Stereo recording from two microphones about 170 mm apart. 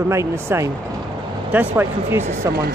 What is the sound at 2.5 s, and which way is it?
Speech, 70° right (ahead or behind).